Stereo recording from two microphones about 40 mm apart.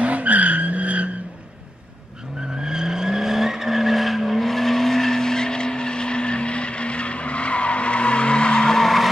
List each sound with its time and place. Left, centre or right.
0.0 s vehicle: right
2.6 s vehicle: centre